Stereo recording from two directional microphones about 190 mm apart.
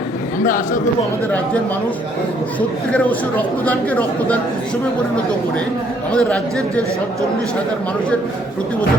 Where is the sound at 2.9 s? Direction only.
10° left (ahead or behind).